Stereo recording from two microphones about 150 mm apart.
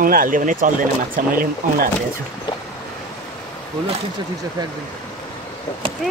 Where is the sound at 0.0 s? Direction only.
65° right (ahead or behind).